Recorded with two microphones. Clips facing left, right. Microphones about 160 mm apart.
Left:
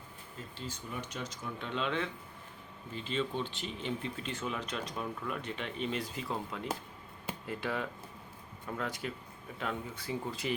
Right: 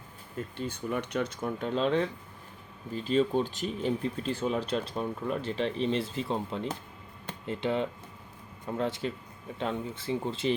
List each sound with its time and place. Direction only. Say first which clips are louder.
0.5 s speech: right 9 dB; 60° right (ahead or behind); by 10.5 s 25° right (ahead or behind)